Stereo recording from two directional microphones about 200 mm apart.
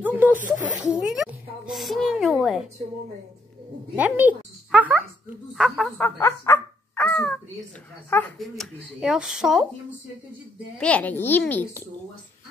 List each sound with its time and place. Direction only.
0.0 s a sound: 10° right (ahead or behind)
0.5 s a child's voice: 5° right (ahead or behind)
3.9 s a child's voice: 10° right (ahead or behind)
10.8 s a child's voice: 5° left (ahead or behind)